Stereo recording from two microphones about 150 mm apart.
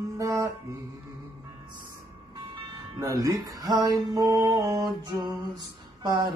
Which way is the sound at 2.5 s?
25° right (ahead or behind).